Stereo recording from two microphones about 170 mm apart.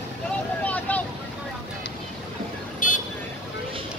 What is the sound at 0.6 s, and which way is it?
Boat, 10° left (ahead or behind).